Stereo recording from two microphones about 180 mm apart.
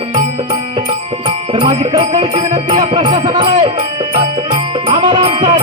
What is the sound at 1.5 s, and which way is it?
Music, 25° right (ahead or behind).